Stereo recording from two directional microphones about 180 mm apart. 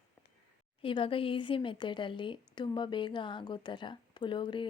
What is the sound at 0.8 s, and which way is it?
A woman's voice, 30° left (ahead or behind).